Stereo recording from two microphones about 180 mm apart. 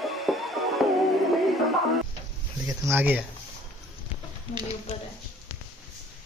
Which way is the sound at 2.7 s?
10° right (ahead or behind).